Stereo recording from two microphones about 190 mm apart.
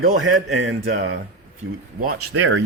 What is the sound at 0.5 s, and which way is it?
Speech, 90° right.